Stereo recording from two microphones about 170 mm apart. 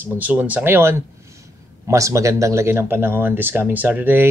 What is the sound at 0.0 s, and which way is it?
Speech, 10° right (ahead or behind).